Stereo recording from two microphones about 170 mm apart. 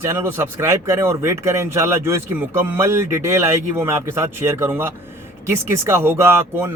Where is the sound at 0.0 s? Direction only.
15° right (ahead or behind).